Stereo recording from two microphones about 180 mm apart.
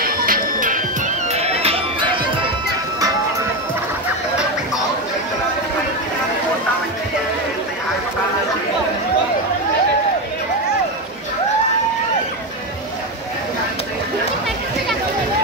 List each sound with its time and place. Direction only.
0.0 s music: 55° right (ahead or behind)
1.3 s music: 35° right (ahead or behind)